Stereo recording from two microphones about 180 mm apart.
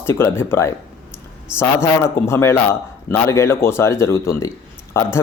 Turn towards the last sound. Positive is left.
turn(degrees=15)  # may be behind; listen again after turning